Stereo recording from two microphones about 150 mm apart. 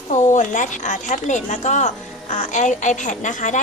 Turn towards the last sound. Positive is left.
turn(degrees=55)  # may be behind; listen again after turning